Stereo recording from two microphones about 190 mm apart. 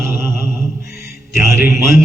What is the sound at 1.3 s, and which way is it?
Speech, 15° right (ahead or behind).